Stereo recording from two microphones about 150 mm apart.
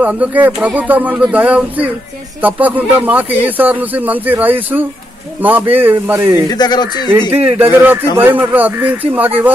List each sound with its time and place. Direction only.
0.0 s speech: 10° right (ahead or behind)
6.5 s speech: 30° left (ahead or behind)
7.1 s speech: 15° right (ahead or behind)